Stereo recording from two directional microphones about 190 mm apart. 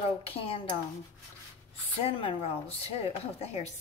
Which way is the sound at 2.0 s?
30° left (ahead or behind).